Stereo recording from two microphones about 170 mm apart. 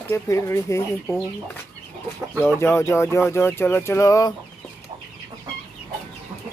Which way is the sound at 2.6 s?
15° left (ahead or behind).